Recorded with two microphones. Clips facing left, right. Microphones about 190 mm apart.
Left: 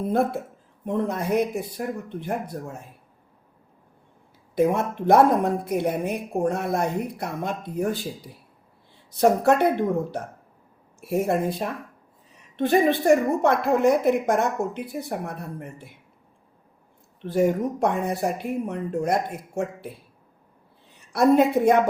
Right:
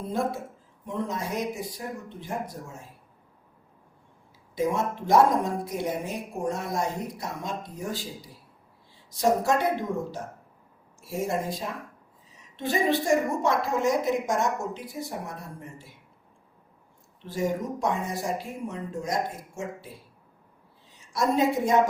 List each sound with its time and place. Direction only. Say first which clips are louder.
0.0 s a woman's voice: left 6 dB; 60° left (ahead or behind)
4.5 s a woman's voice: left 5 dB; 60° left (ahead or behind)
9.0 s a woman's voice: left 5 dB; 60° left (ahead or behind)
17.2 s a woman's voice: left 7 dB; 60° left (ahead or behind)
21.1 s a woman's voice: left 6 dB; 60° left (ahead or behind)